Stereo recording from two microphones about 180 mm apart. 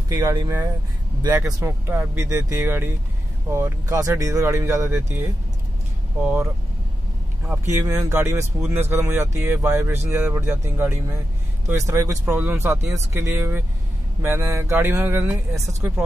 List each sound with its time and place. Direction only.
0.1 s speech: 20° right (ahead or behind)
7.7 s speech: 15° right (ahead or behind)